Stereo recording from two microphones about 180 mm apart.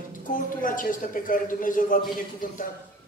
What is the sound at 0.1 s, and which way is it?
Speech, 50° left (ahead or behind).